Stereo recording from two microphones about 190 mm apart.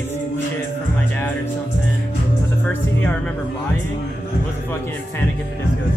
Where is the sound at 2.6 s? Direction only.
5° left (ahead or behind).